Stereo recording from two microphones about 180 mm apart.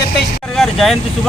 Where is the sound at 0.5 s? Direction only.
Centre (ahead or behind).